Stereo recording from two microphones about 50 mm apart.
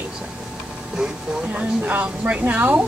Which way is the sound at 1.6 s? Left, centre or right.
Right.